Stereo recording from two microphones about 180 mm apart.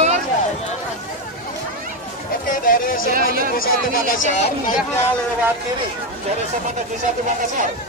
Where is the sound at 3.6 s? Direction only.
50° left (ahead or behind).